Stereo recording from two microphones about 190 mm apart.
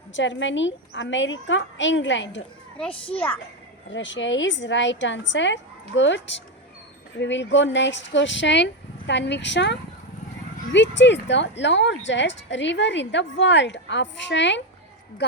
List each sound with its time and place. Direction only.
0.1 s speech: 75° left (ahead or behind)
3.8 s a woman's voice: 75° left (ahead or behind)